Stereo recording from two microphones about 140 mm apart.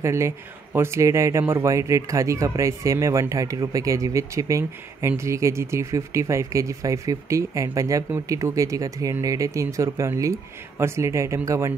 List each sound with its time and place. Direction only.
0.0 s speech: 20° right (ahead or behind)